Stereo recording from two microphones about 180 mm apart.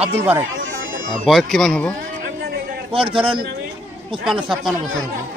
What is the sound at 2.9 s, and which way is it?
Speech, 30° right (ahead or behind).